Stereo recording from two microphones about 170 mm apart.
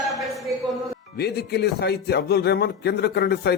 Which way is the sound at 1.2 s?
70° left (ahead or behind).